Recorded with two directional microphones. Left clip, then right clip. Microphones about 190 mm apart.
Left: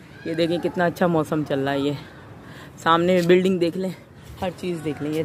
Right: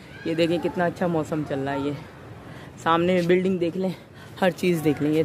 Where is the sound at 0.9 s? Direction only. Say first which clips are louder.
Left 4 dB; 20° left (ahead or behind).